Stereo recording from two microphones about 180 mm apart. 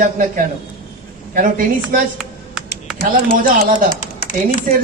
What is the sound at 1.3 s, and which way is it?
Speech, 50° right (ahead or behind).